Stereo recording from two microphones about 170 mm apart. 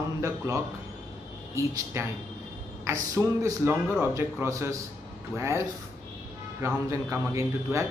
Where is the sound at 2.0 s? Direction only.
15° right (ahead or behind).